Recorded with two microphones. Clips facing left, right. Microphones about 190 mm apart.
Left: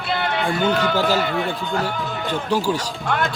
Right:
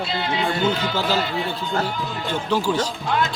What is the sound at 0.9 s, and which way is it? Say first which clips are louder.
Speech: left 3 dB; 50° left (ahead or behind).